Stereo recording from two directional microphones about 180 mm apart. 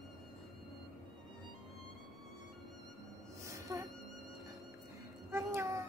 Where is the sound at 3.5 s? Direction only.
15° right (ahead or behind).